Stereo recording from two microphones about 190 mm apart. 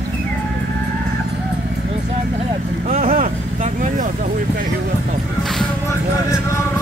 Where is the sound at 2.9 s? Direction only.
45° right (ahead or behind).